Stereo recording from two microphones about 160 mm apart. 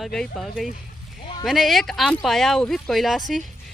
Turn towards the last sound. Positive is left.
turn(degrees=0)  # may be behind; listen again after turning